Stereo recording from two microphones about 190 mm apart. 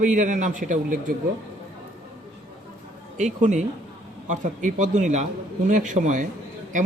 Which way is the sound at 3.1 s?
40° right (ahead or behind).